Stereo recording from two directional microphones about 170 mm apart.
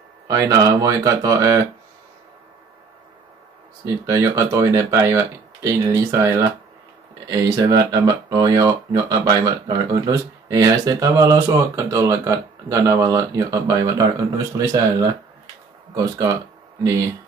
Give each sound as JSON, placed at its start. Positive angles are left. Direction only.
{"t": 0.3, "sound": "speech", "side_deg": -20}
{"t": 3.8, "sound": "speech", "side_deg": -20}